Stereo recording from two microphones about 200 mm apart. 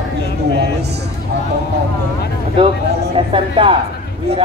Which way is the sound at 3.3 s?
25° right (ahead or behind).